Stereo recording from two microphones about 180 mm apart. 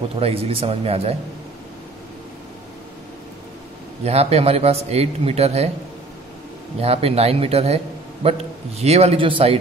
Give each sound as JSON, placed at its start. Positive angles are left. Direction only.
{"t": 0.2, "sound": "a man's voice", "side_deg": -30}
{"t": 4.0, "sound": "a man's voice", "side_deg": -35}
{"t": 6.8, "sound": "a man's voice", "side_deg": -35}